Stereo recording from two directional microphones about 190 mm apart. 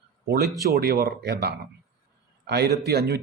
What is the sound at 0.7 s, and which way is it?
A man's voice, 55° right (ahead or behind).